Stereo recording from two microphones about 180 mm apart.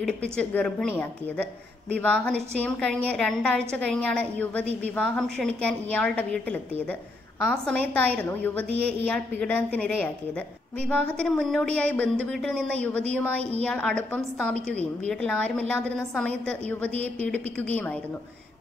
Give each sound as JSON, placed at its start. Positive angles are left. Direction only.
{"t": 0.0, "sound": "a woman's voice", "side_deg": 5}
{"t": 13.4, "sound": "a woman's voice", "side_deg": -35}
{"t": 13.7, "sound": "a woman's voice", "side_deg": 5}